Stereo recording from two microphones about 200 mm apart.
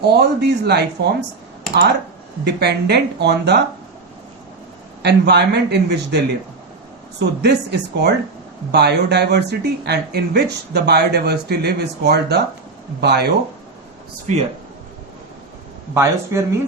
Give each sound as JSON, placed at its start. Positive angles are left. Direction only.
{"t": 0.0, "sound": "speech", "side_deg": -55}
{"t": 2.4, "sound": "speech", "side_deg": -55}
{"t": 5.0, "sound": "speech", "side_deg": -55}
{"t": 7.2, "sound": "speech", "side_deg": -55}
{"t": 14.3, "sound": "speech", "side_deg": -35}
{"t": 16.0, "sound": "speech", "side_deg": -15}